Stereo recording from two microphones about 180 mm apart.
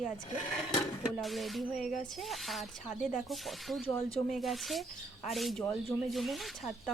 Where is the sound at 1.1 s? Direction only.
Centre (ahead or behind).